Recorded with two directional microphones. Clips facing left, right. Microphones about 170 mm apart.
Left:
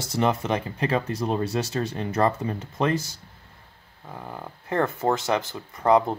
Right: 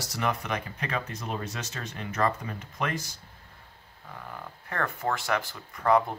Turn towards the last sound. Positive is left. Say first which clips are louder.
# left 4 dB
turn(degrees=20)  # may be behind; listen again after turning